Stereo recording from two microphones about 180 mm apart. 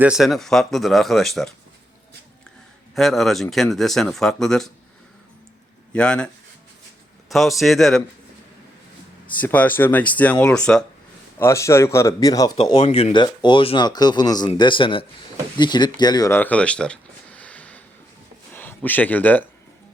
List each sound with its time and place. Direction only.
0.0 s speech: 5° right (ahead or behind)
2.9 s speech: centre (ahead or behind)
5.9 s speech: 5° left (ahead or behind)
9.4 s a man's voice: 10° left (ahead or behind)
11.3 s a man's voice: 15° left (ahead or behind)
12.8 s speech: 35° left (ahead or behind); by 19.5 s 10° left (ahead or behind)